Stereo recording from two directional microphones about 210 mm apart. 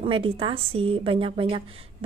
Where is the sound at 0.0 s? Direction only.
25° right (ahead or behind).